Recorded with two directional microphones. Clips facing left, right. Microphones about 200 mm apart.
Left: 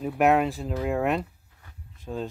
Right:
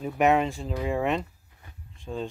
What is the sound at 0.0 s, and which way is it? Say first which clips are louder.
Speech: left 1 dB; centre (ahead or behind).